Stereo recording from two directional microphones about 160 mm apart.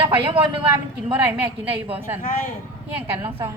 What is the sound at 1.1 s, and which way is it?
Speech, 10° right (ahead or behind).